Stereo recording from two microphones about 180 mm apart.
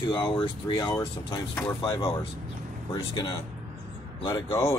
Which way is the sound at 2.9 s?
25° left (ahead or behind).